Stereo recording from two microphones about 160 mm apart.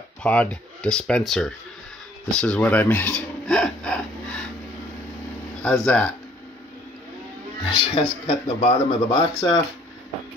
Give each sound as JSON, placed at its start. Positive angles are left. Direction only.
{"t": 0.2, "sound": "speech", "side_deg": 5}
{"t": 5.9, "sound": "speech", "side_deg": 10}
{"t": 7.6, "sound": "speech", "side_deg": 35}
{"t": 9.3, "sound": "speech", "side_deg": 20}